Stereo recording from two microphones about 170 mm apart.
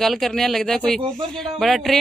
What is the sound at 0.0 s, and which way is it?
Speech, centre (ahead or behind).